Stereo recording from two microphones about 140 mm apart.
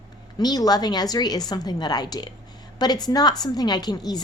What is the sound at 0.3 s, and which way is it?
A woman's voice, 30° left (ahead or behind).